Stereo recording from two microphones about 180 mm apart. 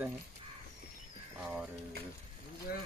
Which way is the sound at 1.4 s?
5° right (ahead or behind).